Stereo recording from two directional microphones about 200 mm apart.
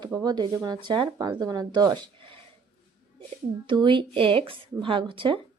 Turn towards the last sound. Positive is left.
turn(degrees=-25)  # may be behind; listen again after turning